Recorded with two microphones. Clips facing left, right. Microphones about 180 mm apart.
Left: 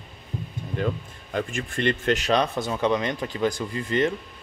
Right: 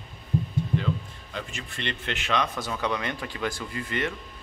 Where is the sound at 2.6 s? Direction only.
25° left (ahead or behind).